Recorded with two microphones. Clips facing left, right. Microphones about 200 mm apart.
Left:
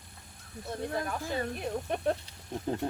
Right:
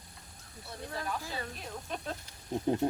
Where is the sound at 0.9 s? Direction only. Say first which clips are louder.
Left 2 dB; 50° left (ahead or behind).